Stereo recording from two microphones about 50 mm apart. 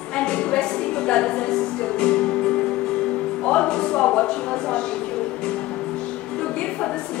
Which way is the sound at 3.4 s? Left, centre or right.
Centre.